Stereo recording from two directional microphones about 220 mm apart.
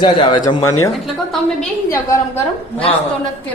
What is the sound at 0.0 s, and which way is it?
Speech, 20° left (ahead or behind).